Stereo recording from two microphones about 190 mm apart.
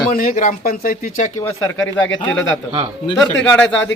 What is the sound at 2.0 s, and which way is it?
Speech, 80° left.